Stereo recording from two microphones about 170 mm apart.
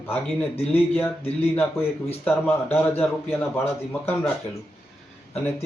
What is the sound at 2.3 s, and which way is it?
Speech, 15° left (ahead or behind).